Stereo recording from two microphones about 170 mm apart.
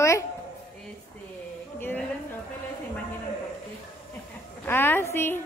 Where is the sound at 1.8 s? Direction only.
10° left (ahead or behind).